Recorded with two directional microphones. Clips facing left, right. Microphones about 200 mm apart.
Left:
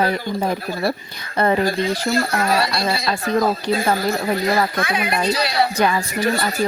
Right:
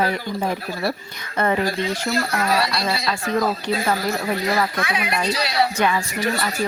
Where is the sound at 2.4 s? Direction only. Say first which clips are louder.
Left 2 dB; 50° left (ahead or behind).